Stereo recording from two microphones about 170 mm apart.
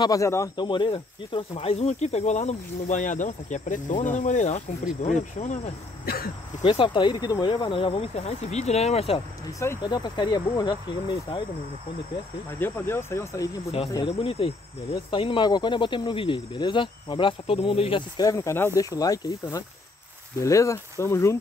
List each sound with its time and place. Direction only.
0.0 s speech: 20° left (ahead or behind); by 5.6 s 45° left (ahead or behind)
6.6 s speech: 30° left (ahead or behind)
9.6 s speech: 20° left (ahead or behind)
12.5 s speech: 10° left (ahead or behind)
14.0 s speech: 35° left (ahead or behind); by 21.4 s 15° left (ahead or behind)